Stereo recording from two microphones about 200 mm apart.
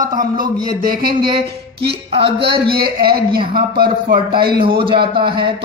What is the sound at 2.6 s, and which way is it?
A man's voice, 50° right (ahead or behind).